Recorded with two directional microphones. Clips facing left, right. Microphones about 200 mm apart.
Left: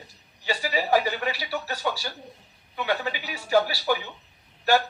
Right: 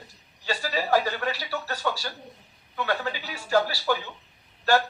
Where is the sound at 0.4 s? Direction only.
15° left (ahead or behind).